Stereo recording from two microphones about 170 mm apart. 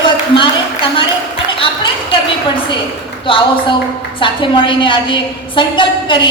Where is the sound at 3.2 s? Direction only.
30° left (ahead or behind).